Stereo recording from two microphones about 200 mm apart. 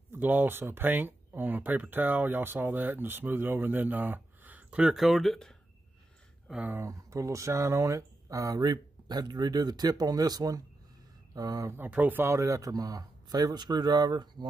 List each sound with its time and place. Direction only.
0.1 s speech: 10° right (ahead or behind)